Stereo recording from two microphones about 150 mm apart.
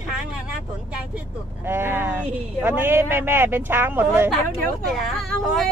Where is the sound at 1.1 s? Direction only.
15° right (ahead or behind).